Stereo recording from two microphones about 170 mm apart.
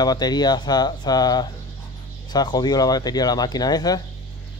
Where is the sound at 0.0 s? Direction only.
25° left (ahead or behind).